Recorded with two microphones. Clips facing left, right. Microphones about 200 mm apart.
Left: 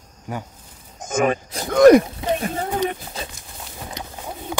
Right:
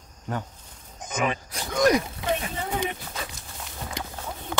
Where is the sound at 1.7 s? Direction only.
55° left (ahead or behind).